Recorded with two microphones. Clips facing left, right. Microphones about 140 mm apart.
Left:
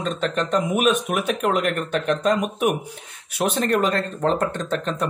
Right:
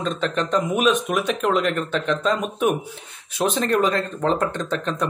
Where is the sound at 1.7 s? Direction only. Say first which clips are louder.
Even; 45° left (ahead or behind).